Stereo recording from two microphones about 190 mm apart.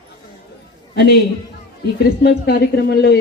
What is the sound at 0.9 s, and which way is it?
A man's voice, 60° left (ahead or behind).